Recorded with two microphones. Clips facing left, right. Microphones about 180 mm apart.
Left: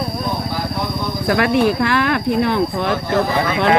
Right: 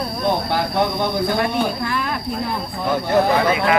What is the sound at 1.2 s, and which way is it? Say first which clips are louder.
Speech: left 5 dB; 80° left.